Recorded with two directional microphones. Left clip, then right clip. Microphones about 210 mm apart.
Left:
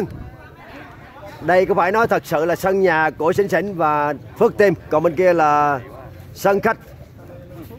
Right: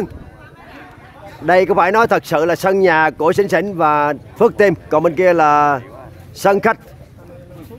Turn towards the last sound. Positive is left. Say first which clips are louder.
# right 3 dB
turn(degrees=-15)  # may be behind; listen again after turning